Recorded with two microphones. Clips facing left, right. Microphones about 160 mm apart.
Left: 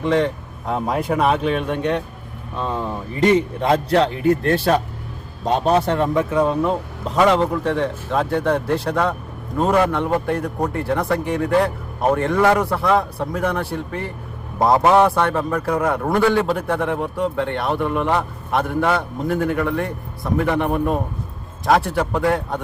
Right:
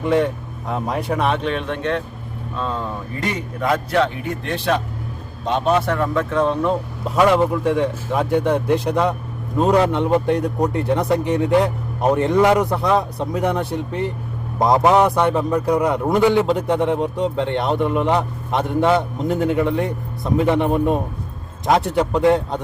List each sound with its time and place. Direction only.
0.0 s speech: 5° right (ahead or behind); by 3.2 s 15° left (ahead or behind)
3.6 s a man's voice: 30° left (ahead or behind)
6.0 s speech: 15° left (ahead or behind)
7.2 s a man's voice: 5° right (ahead or behind)